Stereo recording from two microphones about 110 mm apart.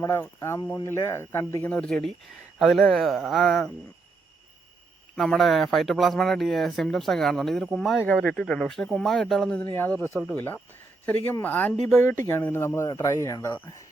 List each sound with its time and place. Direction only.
0.0 s speech: 25° left (ahead or behind); by 3.7 s 5° left (ahead or behind)
5.1 s speech: 5° left (ahead or behind)
9.6 s speech: 20° left (ahead or behind)